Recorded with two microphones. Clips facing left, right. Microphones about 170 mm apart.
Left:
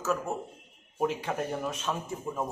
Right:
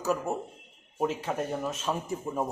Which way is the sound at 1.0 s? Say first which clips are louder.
Even; centre (ahead or behind).